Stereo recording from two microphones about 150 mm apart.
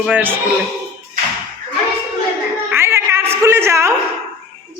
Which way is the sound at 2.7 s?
15° right (ahead or behind).